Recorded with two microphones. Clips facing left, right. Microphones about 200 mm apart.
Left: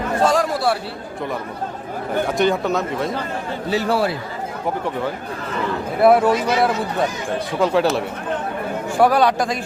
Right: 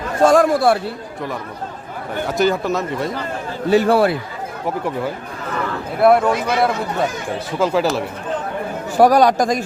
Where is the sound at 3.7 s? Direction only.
55° right (ahead or behind).